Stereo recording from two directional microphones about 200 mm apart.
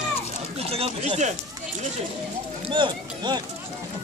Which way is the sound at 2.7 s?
25° right (ahead or behind).